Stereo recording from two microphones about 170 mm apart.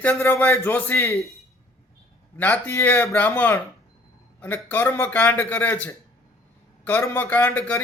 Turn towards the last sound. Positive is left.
turn(degrees=10)  # may be behind; listen again after turning